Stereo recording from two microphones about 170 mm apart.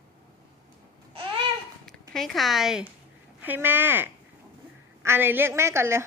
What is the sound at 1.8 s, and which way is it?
A woman's voice, centre (ahead or behind).